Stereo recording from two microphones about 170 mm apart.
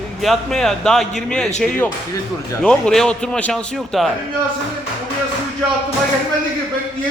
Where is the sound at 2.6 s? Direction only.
5° left (ahead or behind).